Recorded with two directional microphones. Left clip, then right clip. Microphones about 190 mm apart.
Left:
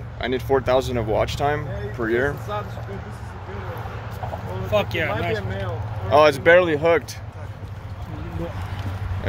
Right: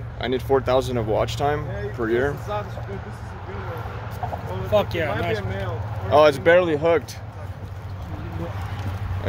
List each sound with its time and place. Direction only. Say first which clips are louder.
0.2 s speech: even; 5° right (ahead or behind)
4.6 s speech: right 1 dB; 25° right (ahead or behind)
6.0 s speech: left 1 dB; centre (ahead or behind)